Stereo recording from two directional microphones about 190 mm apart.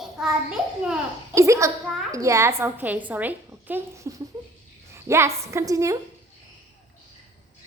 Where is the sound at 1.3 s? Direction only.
15° right (ahead or behind).